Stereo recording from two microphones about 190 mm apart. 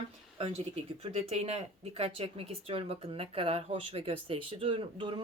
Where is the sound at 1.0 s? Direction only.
30° right (ahead or behind).